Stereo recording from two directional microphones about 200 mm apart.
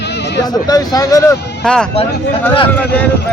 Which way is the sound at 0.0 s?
60° left (ahead or behind).